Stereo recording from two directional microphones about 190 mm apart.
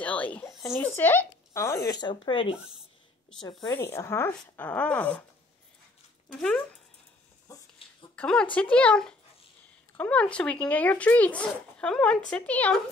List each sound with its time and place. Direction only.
0.0 s a sound: 5° left (ahead or behind)
0.7 s speech: 10° left (ahead or behind); by 2.5 s 25° left (ahead or behind)
3.6 s speech: 15° left (ahead or behind)
6.3 s speech: 5° left (ahead or behind)
7.5 s a sound: 15° left (ahead or behind)
8.2 s speech: 5° left (ahead or behind)